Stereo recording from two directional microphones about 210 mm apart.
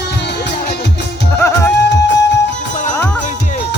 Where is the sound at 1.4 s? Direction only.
10° left (ahead or behind).